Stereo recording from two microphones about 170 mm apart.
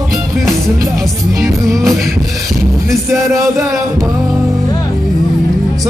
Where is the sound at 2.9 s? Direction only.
20° right (ahead or behind).